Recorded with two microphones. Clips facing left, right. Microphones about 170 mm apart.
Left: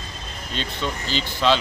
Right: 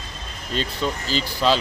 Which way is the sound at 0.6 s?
40° right (ahead or behind).